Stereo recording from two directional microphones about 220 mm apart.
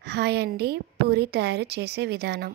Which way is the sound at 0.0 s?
50° right (ahead or behind).